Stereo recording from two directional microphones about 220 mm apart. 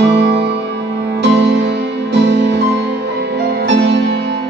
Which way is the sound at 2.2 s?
55° right (ahead or behind).